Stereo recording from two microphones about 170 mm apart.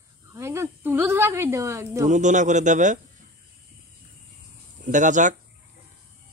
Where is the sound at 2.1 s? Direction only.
45° right (ahead or behind).